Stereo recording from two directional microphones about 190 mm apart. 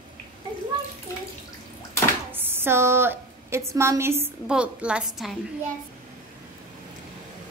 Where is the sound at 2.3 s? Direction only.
10° right (ahead or behind).